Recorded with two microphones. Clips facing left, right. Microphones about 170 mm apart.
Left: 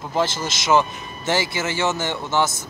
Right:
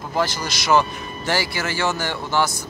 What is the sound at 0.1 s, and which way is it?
Speech, 25° left (ahead or behind).